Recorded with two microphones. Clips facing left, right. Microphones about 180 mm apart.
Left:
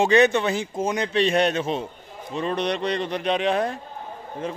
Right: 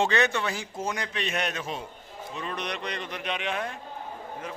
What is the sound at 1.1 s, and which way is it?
A man's voice, 30° left (ahead or behind).